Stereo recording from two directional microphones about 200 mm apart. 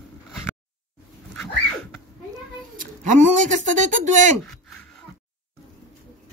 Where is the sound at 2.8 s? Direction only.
40° right (ahead or behind).